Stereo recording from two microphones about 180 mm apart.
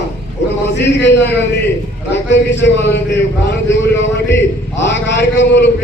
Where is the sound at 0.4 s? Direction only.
75° left (ahead or behind).